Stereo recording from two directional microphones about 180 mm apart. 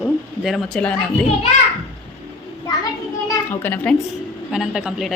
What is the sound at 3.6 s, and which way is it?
Speech, 10° left (ahead or behind).